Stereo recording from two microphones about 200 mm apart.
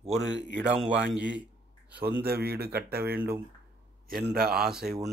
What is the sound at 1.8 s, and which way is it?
Speech, 55° right (ahead or behind).